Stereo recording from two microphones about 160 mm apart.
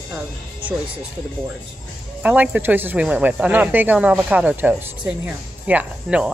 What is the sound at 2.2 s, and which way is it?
Speech, 10° right (ahead or behind).